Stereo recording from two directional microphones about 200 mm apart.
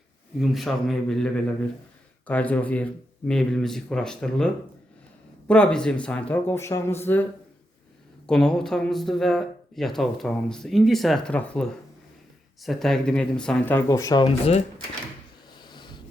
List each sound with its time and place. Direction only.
0.3 s speech: centre (ahead or behind)
8.3 s speech: 5° left (ahead or behind); by 14.6 s 30° left (ahead or behind)
15.6 s snort: 20° left (ahead or behind)